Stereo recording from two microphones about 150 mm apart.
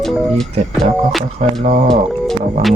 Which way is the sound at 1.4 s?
45° right (ahead or behind).